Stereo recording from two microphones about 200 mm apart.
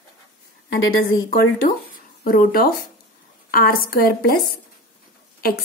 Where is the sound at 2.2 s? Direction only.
45° left (ahead or behind).